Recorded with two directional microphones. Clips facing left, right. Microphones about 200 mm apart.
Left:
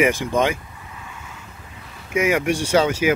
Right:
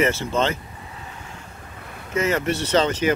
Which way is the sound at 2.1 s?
10° left (ahead or behind).